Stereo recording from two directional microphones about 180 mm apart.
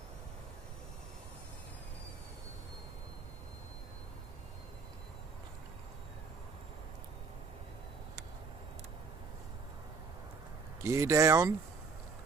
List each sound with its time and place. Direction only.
10.8 s speech: 15° right (ahead or behind)